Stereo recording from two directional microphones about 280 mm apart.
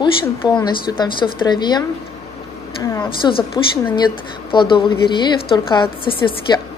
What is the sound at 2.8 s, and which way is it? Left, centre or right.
Speech, centre.